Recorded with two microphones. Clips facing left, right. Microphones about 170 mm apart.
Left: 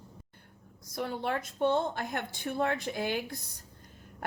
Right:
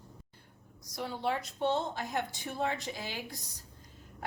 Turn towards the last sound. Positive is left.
turn(degrees=55)  # may be behind; listen again after turning